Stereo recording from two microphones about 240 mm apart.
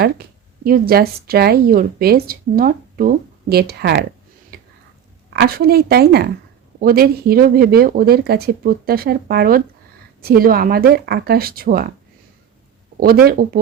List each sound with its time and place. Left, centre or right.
0.6 s speech: right
4.5 s a sound: right
5.3 s speech: right
13.0 s speech: right